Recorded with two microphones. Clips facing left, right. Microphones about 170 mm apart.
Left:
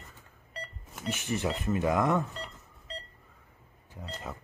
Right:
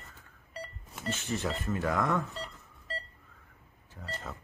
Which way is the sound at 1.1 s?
15° left (ahead or behind).